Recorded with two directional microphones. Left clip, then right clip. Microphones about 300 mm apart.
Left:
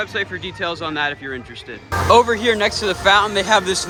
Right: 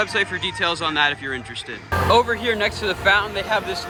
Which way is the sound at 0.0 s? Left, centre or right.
Centre.